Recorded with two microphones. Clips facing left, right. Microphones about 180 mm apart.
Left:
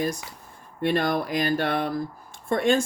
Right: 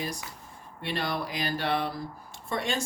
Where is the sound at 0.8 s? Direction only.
50° left (ahead or behind).